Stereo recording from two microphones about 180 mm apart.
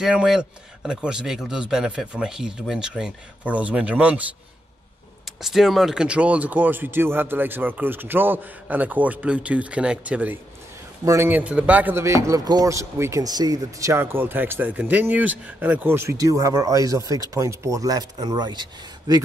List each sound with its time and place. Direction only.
0.0 s speech: 5° right (ahead or behind)
5.4 s speech: centre (ahead or behind); by 19.2 s 25° right (ahead or behind)